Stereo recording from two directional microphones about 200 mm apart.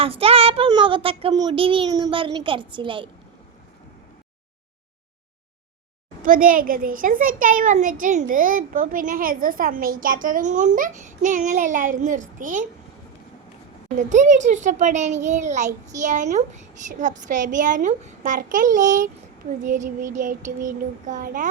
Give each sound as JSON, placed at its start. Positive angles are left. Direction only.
{"t": 0.0, "sound": "a child's voice", "side_deg": -30}
{"t": 6.2, "sound": "a child's voice", "side_deg": -45}
{"t": 13.9, "sound": "a child's voice", "side_deg": -40}